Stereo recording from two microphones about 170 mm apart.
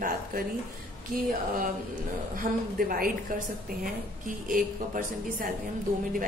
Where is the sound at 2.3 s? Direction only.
55° right (ahead or behind).